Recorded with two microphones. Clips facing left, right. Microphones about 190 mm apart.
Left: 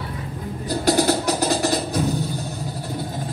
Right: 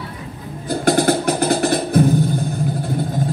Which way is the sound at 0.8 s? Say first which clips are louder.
Right 3 dB; 55° right (ahead or behind).